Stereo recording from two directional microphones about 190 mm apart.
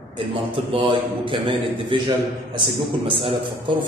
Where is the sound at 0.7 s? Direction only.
30° right (ahead or behind).